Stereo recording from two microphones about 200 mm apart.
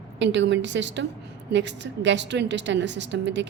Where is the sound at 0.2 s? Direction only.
65° right (ahead or behind).